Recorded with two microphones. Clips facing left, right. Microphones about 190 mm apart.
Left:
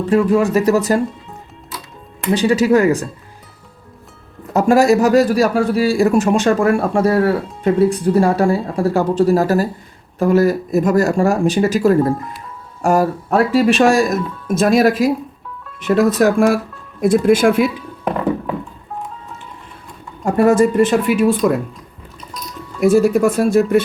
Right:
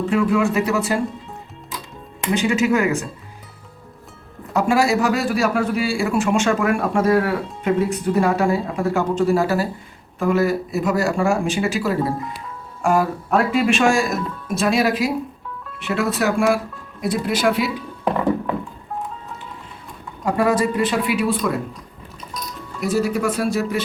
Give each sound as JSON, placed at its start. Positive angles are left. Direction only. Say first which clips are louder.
{"t": 0.1, "sound": "a man's voice", "louder": "left 6 dB", "side_deg": 35}
{"t": 2.4, "sound": "a man's voice", "louder": "left 6 dB", "side_deg": 35}
{"t": 4.5, "sound": "a man's voice", "louder": "left 6 dB", "side_deg": 45}
{"t": 20.2, "sound": "speech", "louder": "left 6 dB", "side_deg": 45}
{"t": 22.8, "sound": "speech", "louder": "left 8 dB", "side_deg": 50}